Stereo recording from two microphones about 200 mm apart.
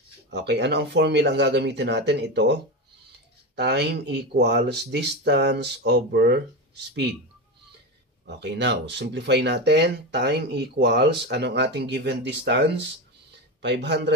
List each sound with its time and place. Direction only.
0.3 s speech: 55° right (ahead or behind)
8.3 s speech: 60° right (ahead or behind)